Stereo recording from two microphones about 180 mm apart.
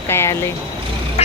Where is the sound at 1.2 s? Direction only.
35° left (ahead or behind).